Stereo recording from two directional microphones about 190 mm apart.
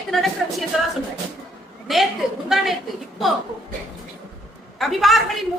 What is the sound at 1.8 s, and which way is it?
Speech, centre (ahead or behind).